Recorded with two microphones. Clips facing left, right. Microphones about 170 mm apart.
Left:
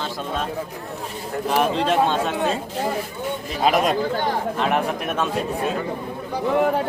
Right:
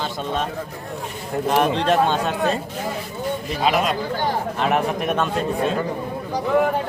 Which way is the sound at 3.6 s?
45° left (ahead or behind).